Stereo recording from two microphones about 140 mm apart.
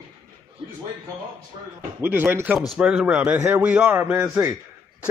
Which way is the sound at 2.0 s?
15° right (ahead or behind).